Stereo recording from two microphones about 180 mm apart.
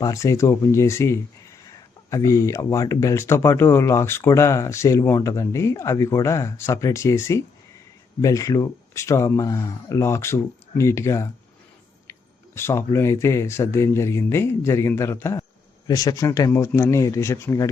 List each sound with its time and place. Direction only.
0.0 s speech: 15° left (ahead or behind)
12.5 s speech: 15° left (ahead or behind)